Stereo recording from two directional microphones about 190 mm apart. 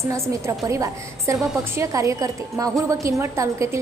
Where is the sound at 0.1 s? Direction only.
15° right (ahead or behind).